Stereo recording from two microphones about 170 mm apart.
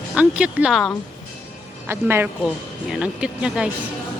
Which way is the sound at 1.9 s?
15° right (ahead or behind).